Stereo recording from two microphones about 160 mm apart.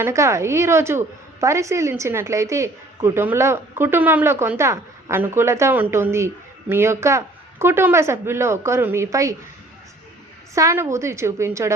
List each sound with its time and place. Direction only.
0.0 s a woman's voice: 20° right (ahead or behind)
10.5 s a woman's voice: 20° right (ahead or behind)